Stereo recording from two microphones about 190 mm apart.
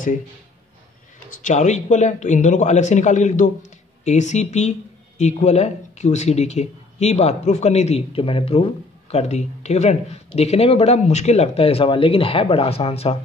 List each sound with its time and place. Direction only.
1.4 s speech: 40° left (ahead or behind)